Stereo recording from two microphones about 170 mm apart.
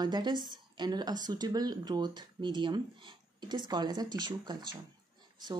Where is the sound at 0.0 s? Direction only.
25° right (ahead or behind).